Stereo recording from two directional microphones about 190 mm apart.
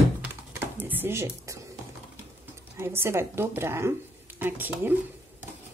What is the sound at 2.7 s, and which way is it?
Speech, 15° right (ahead or behind).